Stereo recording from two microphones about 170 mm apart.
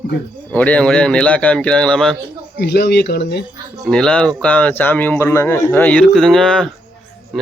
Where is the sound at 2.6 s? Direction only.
75° left (ahead or behind).